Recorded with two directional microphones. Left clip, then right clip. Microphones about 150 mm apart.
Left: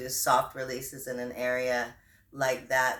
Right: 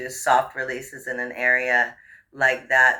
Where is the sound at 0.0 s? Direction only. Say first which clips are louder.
Right 6 dB; 45° left (ahead or behind).